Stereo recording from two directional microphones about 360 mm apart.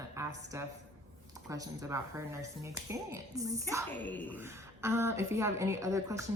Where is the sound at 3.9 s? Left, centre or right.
Centre.